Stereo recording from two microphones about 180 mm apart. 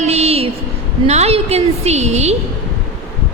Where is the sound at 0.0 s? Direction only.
35° right (ahead or behind).